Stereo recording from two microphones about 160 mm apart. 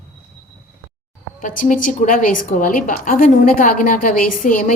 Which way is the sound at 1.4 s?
55° left (ahead or behind).